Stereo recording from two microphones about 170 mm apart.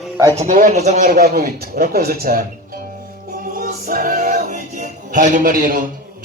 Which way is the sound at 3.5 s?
55° right (ahead or behind).